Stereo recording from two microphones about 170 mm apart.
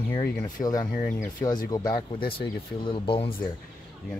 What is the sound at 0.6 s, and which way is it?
Speech, 25° left (ahead or behind).